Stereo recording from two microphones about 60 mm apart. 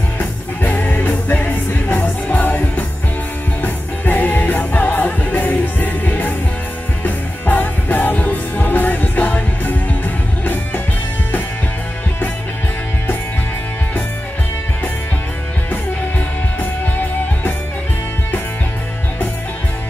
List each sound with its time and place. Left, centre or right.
0.2 s music: left
17.0 s music: left